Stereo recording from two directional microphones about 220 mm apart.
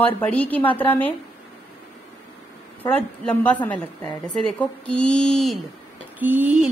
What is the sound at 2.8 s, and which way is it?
A woman's voice, 10° left (ahead or behind).